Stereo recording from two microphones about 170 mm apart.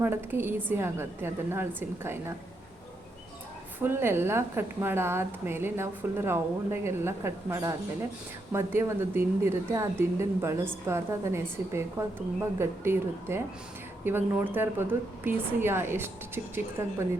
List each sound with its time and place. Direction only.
0.0 s a woman's voice: 15° right (ahead or behind)
3.8 s a woman's voice: 15° right (ahead or behind)